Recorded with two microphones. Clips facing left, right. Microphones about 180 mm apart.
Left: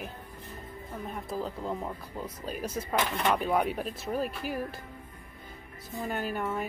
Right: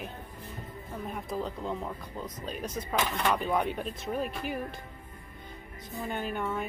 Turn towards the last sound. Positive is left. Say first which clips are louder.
# left 1 dB
turn(degrees=5)  # may be behind; listen again after turning